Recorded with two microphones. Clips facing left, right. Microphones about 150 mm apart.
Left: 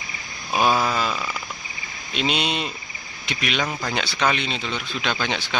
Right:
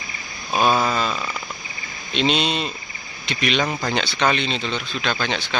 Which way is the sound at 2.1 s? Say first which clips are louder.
Right 3 dB; 10° left (ahead or behind).